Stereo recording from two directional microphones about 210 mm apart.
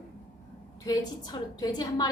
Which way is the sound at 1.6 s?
20° left (ahead or behind).